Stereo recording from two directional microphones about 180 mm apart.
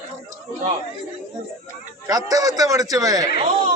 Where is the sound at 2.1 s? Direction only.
20° right (ahead or behind).